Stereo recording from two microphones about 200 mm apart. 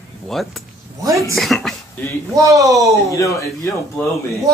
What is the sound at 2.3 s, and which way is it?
Speech, 15° right (ahead or behind).